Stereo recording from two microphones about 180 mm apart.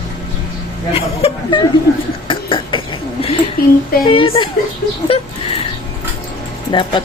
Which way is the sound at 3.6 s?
55° left (ahead or behind).